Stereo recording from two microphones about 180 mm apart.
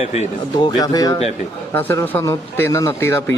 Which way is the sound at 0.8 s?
20° left (ahead or behind).